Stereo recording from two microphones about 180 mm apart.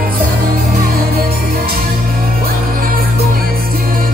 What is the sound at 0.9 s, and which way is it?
Music, 55° right (ahead or behind).